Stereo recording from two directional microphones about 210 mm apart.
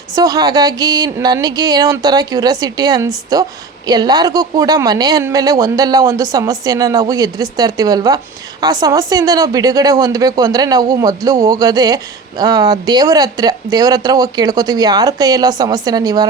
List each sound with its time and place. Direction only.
0.2 s speech: 20° right (ahead or behind)